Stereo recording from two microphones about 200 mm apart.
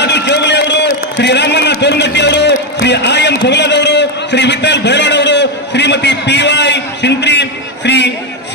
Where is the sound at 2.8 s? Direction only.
60° left (ahead or behind).